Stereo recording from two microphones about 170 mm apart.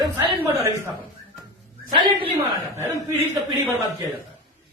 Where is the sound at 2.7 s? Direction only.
15° right (ahead or behind).